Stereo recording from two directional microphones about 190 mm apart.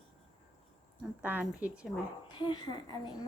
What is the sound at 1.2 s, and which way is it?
Speech, 10° right (ahead or behind).